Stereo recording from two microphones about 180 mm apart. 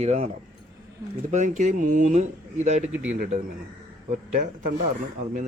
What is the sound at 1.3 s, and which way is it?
Speech, 45° right (ahead or behind).